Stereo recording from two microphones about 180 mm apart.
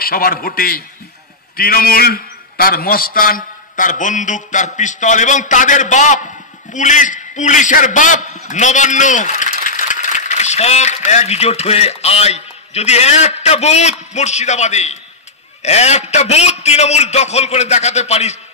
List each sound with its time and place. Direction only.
0.0 s a man's voice: 55° left (ahead or behind); by 18.4 s 40° left (ahead or behind)